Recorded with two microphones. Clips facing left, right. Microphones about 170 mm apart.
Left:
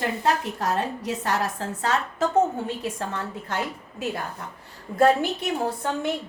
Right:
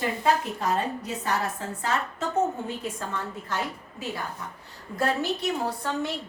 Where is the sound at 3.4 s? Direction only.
65° left (ahead or behind).